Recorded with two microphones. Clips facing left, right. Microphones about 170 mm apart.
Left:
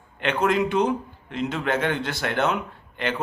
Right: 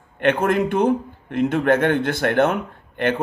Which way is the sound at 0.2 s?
55° right (ahead or behind).